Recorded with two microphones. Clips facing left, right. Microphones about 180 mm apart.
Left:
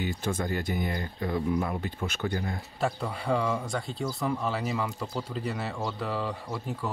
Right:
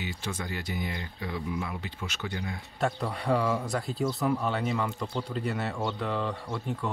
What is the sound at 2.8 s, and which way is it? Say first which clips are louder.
Speech: right 1 dB; centre (ahead or behind).